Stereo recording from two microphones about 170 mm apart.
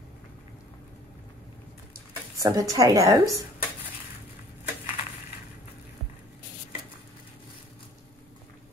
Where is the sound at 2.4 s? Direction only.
20° right (ahead or behind).